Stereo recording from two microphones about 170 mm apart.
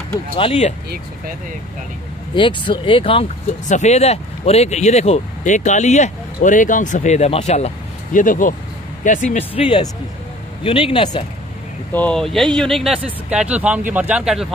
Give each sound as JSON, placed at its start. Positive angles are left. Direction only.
{"t": 0.4, "sound": "speech", "side_deg": 40}
{"t": 0.8, "sound": "speech", "side_deg": -65}
{"t": 2.3, "sound": "speech", "side_deg": 30}
{"t": 3.6, "sound": "speech", "side_deg": 45}
{"t": 11.9, "sound": "speech", "side_deg": 5}